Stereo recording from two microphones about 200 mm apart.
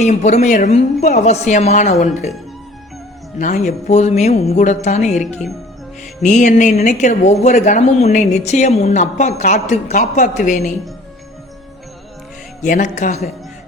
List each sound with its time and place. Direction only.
0.0 s speech: 35° left (ahead or behind)
3.3 s speech: 35° left (ahead or behind)
12.6 s speech: 40° left (ahead or behind)